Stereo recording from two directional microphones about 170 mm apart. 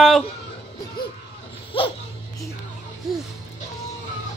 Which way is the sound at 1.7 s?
30° left (ahead or behind).